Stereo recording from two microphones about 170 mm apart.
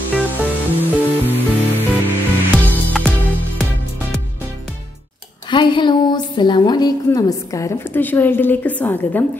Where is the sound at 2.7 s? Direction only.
5° left (ahead or behind).